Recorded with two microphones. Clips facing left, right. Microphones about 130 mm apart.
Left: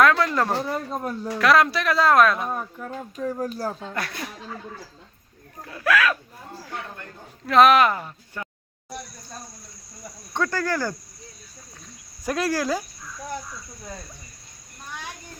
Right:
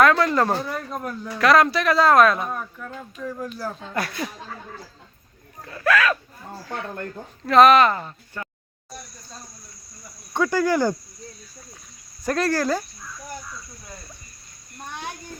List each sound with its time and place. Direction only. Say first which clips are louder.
0.0 s a sound: right 2 dB; centre (ahead or behind)
0.7 s speech: left 2 dB; 25° left (ahead or behind)
1.4 s speech: right 2 dB; centre (ahead or behind)
2.5 s speech: left 1 dB; 25° left (ahead or behind)
5.6 s speech: right 1 dB; 5° left (ahead or behind)
7.4 s speech: right 2 dB; centre (ahead or behind)
10.3 s speech: right 5 dB; 10° right (ahead or behind)
12.2 s speech: right 2 dB; 5° left (ahead or behind)